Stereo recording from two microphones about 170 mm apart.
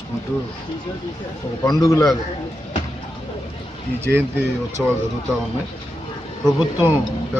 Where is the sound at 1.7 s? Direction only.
20° left (ahead or behind).